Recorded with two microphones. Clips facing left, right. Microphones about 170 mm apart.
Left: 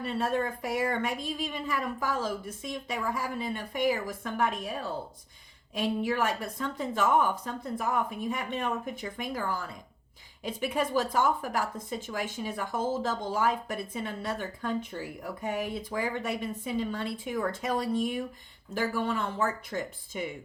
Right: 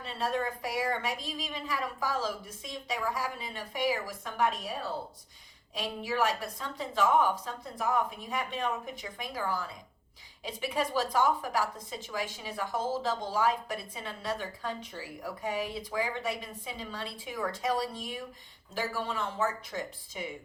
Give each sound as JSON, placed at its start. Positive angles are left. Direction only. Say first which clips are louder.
{"t": 0.0, "sound": "a woman's voice", "louder": "left 3 dB", "side_deg": 50}